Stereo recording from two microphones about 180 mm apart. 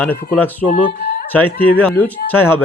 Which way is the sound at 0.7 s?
45° left (ahead or behind).